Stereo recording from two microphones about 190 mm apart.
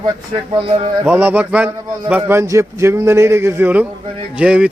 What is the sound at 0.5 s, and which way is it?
Speech, 30° right (ahead or behind).